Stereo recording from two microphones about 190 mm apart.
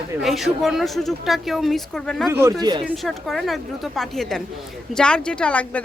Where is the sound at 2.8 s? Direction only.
Centre (ahead or behind).